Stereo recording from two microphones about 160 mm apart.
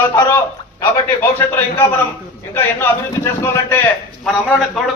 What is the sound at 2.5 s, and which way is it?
A man's voice, 15° left (ahead or behind).